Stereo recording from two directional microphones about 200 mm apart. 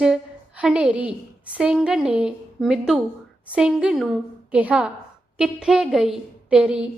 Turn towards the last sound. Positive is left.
turn(degrees=-5)  # may be behind; listen again after turning